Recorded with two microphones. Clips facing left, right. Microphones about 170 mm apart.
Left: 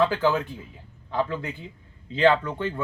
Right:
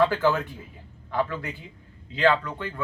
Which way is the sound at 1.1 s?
20° left (ahead or behind).